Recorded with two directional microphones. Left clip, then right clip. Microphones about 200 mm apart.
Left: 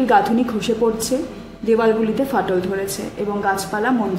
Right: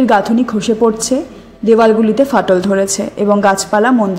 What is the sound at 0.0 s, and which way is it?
A woman's voice, 30° right (ahead or behind).